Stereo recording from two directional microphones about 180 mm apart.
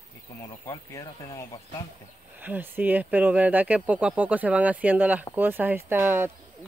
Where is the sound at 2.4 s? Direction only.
10° right (ahead or behind).